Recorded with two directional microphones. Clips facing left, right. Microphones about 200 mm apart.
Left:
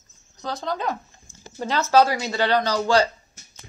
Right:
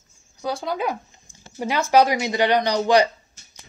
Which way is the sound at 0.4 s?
10° right (ahead or behind).